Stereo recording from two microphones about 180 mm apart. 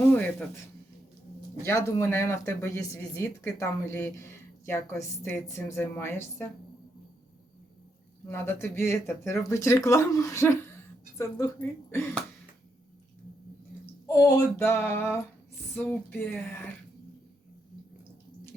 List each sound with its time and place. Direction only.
0.1 s a sound: 10° left (ahead or behind)
1.6 s speech: 15° left (ahead or behind)
8.3 s speech: 15° left (ahead or behind)
14.1 s speech: 20° left (ahead or behind)